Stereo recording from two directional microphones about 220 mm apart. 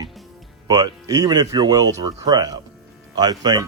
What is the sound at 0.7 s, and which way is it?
Speech, 15° right (ahead or behind).